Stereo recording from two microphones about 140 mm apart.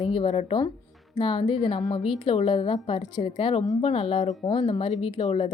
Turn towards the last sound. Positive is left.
turn(degrees=50)  # may be behind; listen again after turning